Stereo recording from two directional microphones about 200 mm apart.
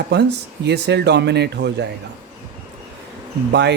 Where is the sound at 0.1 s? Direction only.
60° right (ahead or behind).